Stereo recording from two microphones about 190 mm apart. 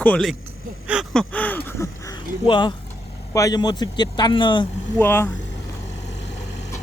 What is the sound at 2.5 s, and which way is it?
Speech, 25° left (ahead or behind).